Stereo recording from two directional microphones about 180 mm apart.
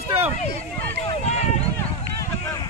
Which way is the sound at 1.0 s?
35° left (ahead or behind).